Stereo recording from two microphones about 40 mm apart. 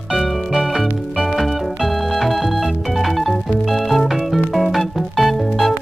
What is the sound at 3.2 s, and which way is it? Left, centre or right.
Music, centre.